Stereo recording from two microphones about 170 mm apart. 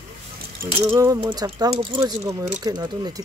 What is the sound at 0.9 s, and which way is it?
Speech, 20° right (ahead or behind).